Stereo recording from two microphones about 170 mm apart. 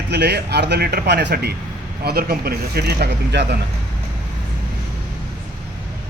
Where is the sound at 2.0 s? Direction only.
65° right (ahead or behind); by 3.6 s 80° right.